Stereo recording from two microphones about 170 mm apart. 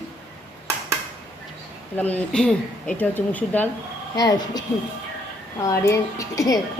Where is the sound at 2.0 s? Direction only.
10° left (ahead or behind).